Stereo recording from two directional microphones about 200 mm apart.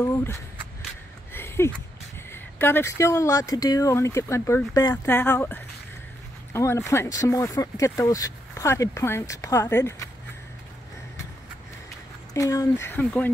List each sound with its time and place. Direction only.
0.0 s speech: 10° left (ahead or behind)
1.3 s a sound: 10° left (ahead or behind)
2.3 s speech: 10° left (ahead or behind)
12.4 s speech: 15° left (ahead or behind)